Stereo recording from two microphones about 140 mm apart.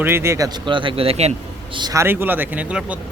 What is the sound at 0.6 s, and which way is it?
Speech, 35° right (ahead or behind).